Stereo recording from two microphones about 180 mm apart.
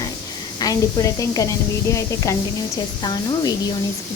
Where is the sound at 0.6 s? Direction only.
20° left (ahead or behind).